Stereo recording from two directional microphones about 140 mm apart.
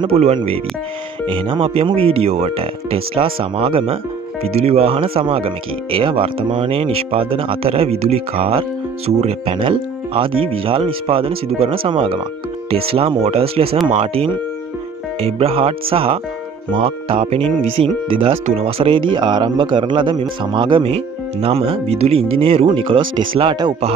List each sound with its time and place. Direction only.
0.0 s speech: 45° right (ahead or behind)